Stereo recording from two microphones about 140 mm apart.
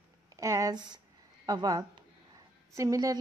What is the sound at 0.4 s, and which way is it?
Speech, 25° right (ahead or behind).